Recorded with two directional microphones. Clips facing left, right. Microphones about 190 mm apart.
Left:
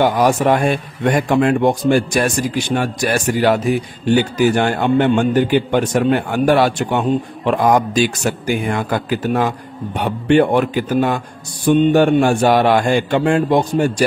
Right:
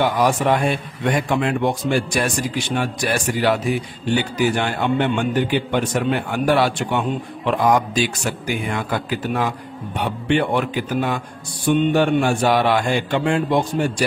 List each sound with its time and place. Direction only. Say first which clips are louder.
0.0 s speech: left 4 dB; 45° left (ahead or behind)